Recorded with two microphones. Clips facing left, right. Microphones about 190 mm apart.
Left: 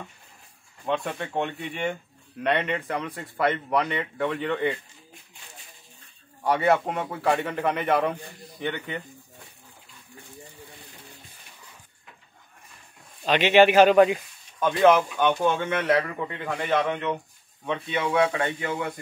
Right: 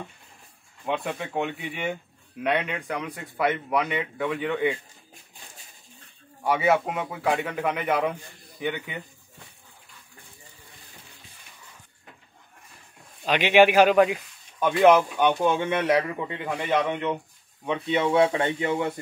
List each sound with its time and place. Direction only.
0.8 s a man's voice: 5° right (ahead or behind)
6.4 s a man's voice: centre (ahead or behind)
13.2 s speech: 10° right (ahead or behind)